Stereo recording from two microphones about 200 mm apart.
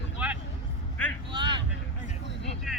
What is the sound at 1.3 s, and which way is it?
Vehicle, 25° right (ahead or behind).